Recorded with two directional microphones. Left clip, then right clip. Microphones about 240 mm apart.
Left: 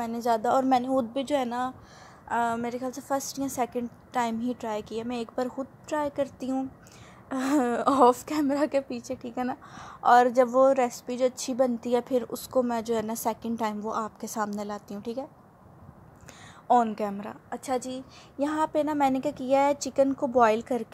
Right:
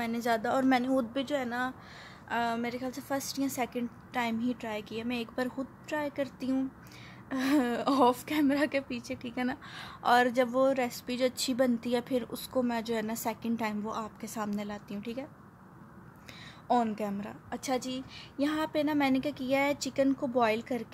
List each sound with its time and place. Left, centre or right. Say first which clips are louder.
0.0 s a woman's voice: left 4 dB; centre
16.6 s a woman's voice: left 6 dB; centre